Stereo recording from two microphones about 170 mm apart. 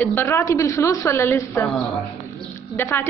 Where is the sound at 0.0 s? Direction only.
10° left (ahead or behind).